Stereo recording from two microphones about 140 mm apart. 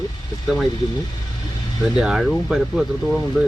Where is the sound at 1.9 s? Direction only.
5° right (ahead or behind).